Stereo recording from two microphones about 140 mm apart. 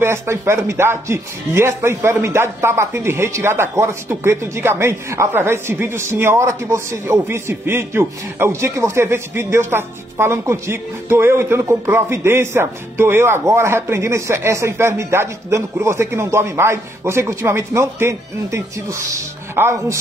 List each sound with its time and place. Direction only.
0.0 s speech: 20° right (ahead or behind)